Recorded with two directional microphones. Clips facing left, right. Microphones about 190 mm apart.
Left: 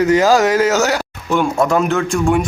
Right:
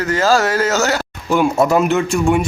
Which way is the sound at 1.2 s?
5° right (ahead or behind).